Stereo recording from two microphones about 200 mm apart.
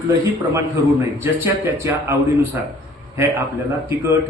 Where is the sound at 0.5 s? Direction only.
10° right (ahead or behind).